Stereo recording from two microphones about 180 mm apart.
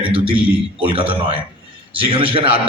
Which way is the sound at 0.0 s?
30° right (ahead or behind).